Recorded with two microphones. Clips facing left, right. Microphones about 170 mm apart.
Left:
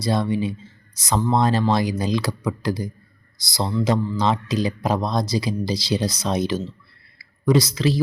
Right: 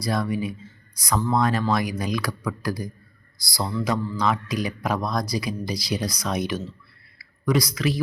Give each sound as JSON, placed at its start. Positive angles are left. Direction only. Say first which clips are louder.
{"t": 0.0, "sound": "a man's voice", "louder": "left 3 dB", "side_deg": 25}